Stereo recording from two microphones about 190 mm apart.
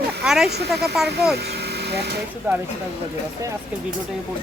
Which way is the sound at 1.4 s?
60° right (ahead or behind).